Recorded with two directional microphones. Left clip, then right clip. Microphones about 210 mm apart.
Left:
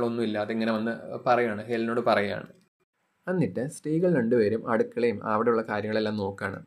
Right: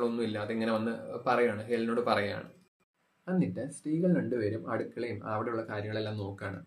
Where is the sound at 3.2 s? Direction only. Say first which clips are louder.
Left 6 dB; 40° left (ahead or behind).